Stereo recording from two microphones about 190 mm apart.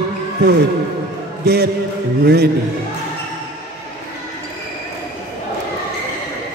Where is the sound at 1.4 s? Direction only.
55° right (ahead or behind).